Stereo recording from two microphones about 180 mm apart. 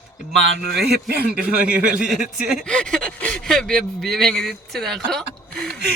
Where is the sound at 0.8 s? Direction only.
60° right (ahead or behind).